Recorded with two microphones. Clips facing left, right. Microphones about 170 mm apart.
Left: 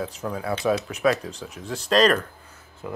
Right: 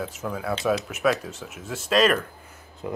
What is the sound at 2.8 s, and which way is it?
Speech, 20° right (ahead or behind).